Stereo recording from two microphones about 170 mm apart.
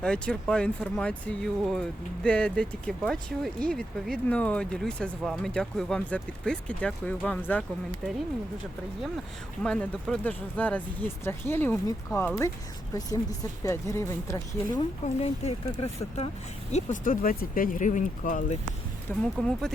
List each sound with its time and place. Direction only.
0.0 s speech: 5° left (ahead or behind)
8.0 s speech: centre (ahead or behind)
9.6 s speech: 5° left (ahead or behind); by 14.8 s 20° left (ahead or behind)
15.0 s speech: 40° left (ahead or behind)
16.7 s speech: 50° left (ahead or behind)
19.4 s speech: 5° left (ahead or behind)